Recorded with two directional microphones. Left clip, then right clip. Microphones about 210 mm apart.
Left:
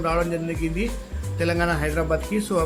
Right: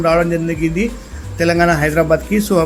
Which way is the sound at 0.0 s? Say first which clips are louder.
Right 9 dB; 5° right (ahead or behind).